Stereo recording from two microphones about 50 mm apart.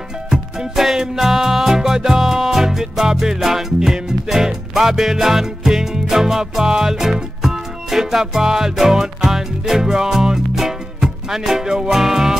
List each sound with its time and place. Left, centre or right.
0.3 s music: centre